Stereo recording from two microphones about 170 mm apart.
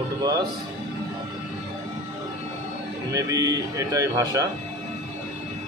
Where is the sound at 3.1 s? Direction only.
20° right (ahead or behind).